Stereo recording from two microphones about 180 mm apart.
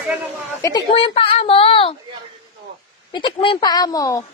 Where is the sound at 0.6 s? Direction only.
20° left (ahead or behind).